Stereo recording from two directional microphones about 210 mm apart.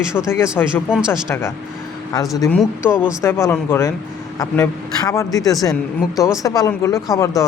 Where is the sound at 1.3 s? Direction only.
10° left (ahead or behind).